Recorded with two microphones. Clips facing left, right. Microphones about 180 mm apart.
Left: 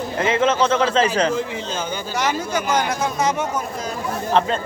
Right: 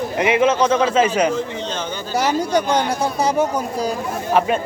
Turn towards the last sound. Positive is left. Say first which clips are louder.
# right 2 dB
turn(degrees=-10)  # may be behind; listen again after turning